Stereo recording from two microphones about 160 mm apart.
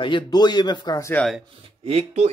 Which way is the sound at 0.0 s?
30° left (ahead or behind).